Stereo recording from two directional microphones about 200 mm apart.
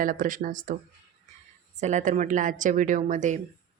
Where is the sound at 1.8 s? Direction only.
40° right (ahead or behind).